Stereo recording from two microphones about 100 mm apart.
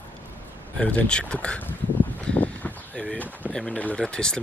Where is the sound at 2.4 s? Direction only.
15° left (ahead or behind).